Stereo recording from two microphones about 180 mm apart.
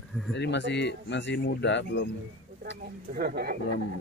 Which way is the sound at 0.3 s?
75° left (ahead or behind).